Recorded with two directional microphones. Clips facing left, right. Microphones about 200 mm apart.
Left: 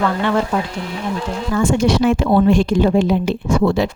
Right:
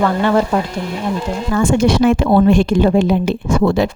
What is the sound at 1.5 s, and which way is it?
A woman's voice, 55° right (ahead or behind).